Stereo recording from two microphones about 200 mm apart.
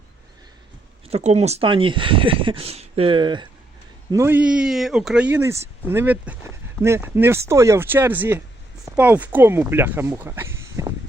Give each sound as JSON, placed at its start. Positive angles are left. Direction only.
{"t": 1.1, "sound": "speech", "side_deg": -35}
{"t": 4.1, "sound": "a man's voice", "side_deg": -10}